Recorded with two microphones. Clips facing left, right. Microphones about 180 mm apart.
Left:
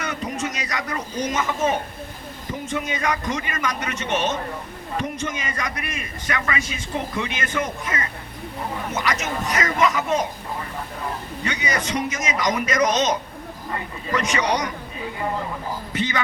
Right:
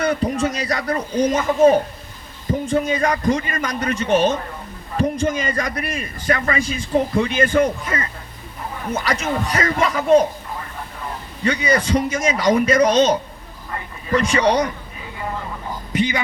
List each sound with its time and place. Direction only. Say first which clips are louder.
0.0 s a man's voice: right 8 dB; 35° right (ahead or behind)
11.4 s a man's voice: right 8 dB; 30° right (ahead or behind)
15.9 s speech: right 5 dB; 15° right (ahead or behind)